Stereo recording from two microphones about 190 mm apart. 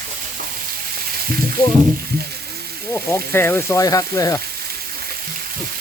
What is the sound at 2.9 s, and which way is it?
Speech, 10° left (ahead or behind).